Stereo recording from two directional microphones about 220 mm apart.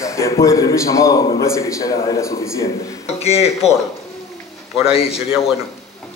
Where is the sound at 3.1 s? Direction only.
30° left (ahead or behind).